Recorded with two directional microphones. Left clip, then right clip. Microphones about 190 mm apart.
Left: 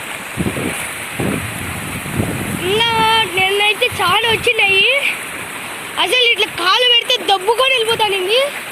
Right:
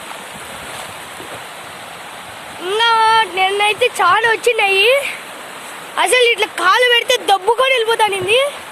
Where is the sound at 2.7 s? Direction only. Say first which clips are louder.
Right 2 dB; 20° right (ahead or behind).